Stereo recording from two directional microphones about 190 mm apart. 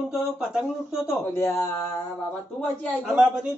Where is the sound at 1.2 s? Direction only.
15° left (ahead or behind).